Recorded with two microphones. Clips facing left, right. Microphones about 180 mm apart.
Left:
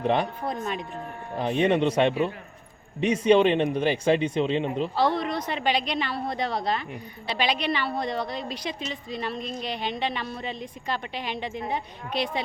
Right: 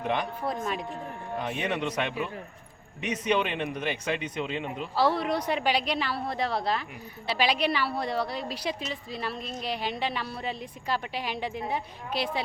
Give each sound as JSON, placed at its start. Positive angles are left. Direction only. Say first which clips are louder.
{"t": 0.0, "sound": "speech", "louder": "left 5 dB", "side_deg": 35}
{"t": 0.4, "sound": "speech", "louder": "left 1 dB", "side_deg": -5}
{"t": 1.4, "sound": "speech", "louder": "left 9 dB", "side_deg": 30}
{"t": 4.9, "sound": "a woman's voice", "louder": "right 2 dB", "side_deg": -5}